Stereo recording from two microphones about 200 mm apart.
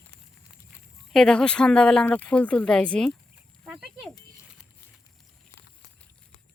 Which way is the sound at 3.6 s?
5° right (ahead or behind).